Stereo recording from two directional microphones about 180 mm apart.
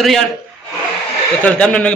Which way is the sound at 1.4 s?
5° left (ahead or behind).